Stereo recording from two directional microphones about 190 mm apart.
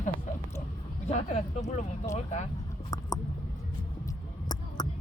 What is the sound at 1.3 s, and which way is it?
Speech, 35° left (ahead or behind).